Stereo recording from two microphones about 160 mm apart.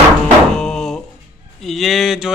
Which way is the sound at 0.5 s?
5° left (ahead or behind).